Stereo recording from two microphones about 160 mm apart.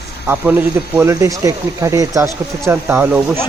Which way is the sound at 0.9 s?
20° right (ahead or behind).